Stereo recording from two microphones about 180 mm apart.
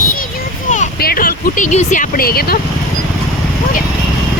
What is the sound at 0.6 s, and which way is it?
Speech, 45° left (ahead or behind).